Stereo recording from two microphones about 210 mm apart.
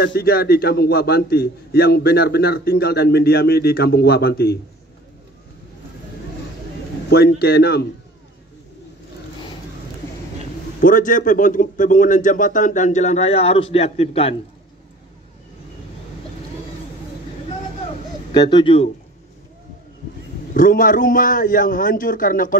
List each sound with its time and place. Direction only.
0.0 s a man's voice: 45° left (ahead or behind)
7.1 s a man's voice: 50° left (ahead or behind)
10.8 s a man's voice: 40° left (ahead or behind)
18.3 s speech: 20° left (ahead or behind)
20.5 s a man's voice: 40° left (ahead or behind)